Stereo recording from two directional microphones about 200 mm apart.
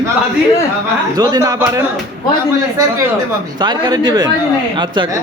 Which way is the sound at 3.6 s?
20° right (ahead or behind).